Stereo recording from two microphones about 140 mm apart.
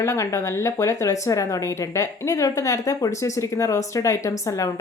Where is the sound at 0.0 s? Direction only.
20° left (ahead or behind).